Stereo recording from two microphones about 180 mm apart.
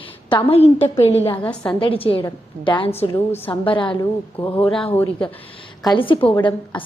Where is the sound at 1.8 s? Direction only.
30° left (ahead or behind).